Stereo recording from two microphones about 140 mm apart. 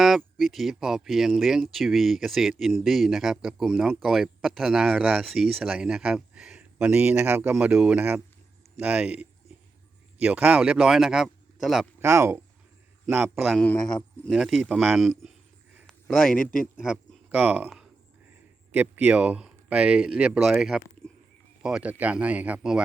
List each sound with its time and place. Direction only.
0.0 s speech: centre (ahead or behind)
11.9 s speech: 20° right (ahead or behind)
13.6 s a man's voice: 5° left (ahead or behind)
16.7 s speech: 5° right (ahead or behind)
18.7 s speech: 10° right (ahead or behind)
21.0 s a sound: 5° left (ahead or behind)
21.6 s speech: 5° right (ahead or behind)